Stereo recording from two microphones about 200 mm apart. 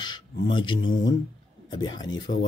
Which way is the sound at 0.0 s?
20° left (ahead or behind).